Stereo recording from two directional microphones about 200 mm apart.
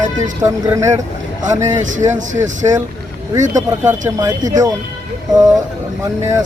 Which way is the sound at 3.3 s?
15° right (ahead or behind).